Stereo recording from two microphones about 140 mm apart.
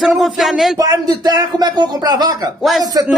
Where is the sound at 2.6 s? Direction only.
Centre (ahead or behind).